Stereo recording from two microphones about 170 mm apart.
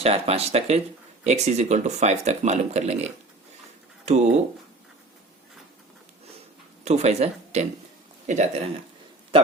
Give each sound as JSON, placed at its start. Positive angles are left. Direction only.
{"t": 0.0, "sound": "speech", "side_deg": -35}
{"t": 6.8, "sound": "speech", "side_deg": -40}